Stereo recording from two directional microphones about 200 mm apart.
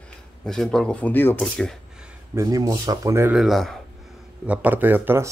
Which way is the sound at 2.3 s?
15° right (ahead or behind).